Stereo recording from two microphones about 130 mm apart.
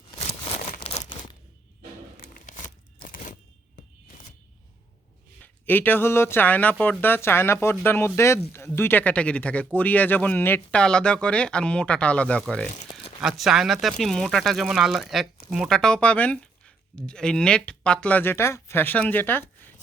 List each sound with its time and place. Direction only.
0.6 s crumpling: 90° left
2.2 s crumpling: 75° left (ahead or behind)
3.0 s a sound: 85° left
5.4 s speech: 15° left (ahead or behind)
13.4 s speech: centre (ahead or behind); by 19.7 s 15° left (ahead or behind)